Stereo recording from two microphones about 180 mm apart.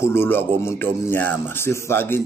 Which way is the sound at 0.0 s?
15° left (ahead or behind).